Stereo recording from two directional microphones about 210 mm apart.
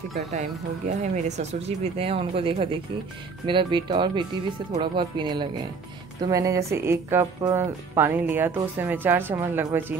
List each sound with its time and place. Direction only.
0.3 s speech: 35° right (ahead or behind); by 9.9 s 10° right (ahead or behind)